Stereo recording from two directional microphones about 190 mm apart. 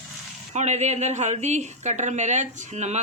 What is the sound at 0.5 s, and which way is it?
A woman's voice, 35° right (ahead or behind).